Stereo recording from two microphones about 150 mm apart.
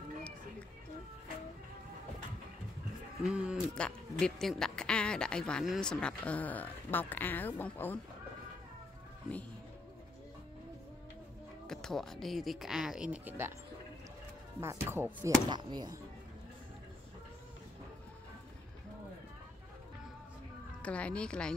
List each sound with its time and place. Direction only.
3.3 s speech: 5° right (ahead or behind)
3.7 s speech: 5° left (ahead or behind)
11.6 s speech: 5° left (ahead or behind); by 13.5 s 10° right (ahead or behind)
14.6 s speech: 15° right (ahead or behind)
15.5 s speech: 30° right (ahead or behind)
20.8 s speech: 10° left (ahead or behind)